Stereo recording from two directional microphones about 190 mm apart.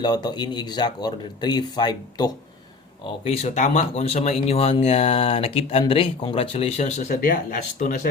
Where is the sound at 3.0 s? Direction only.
35° left (ahead or behind).